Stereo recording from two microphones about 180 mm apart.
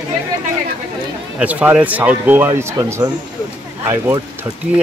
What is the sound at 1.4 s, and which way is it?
Speech, 10° right (ahead or behind).